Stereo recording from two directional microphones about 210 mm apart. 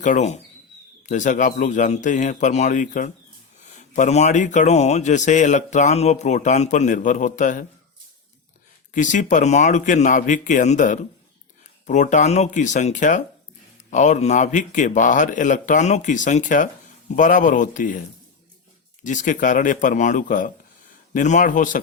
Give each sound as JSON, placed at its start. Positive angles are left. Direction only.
{"t": 0.0, "sound": "speech", "side_deg": 35}
{"t": 8.9, "sound": "speech", "side_deg": 35}
{"t": 19.0, "sound": "speech", "side_deg": 35}